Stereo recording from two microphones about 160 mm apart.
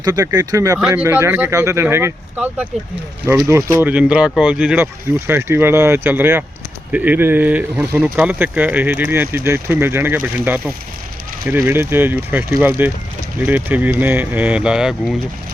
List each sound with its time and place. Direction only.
0.0 s speech: 20° right (ahead or behind)
0.8 s speech: 5° right (ahead or behind)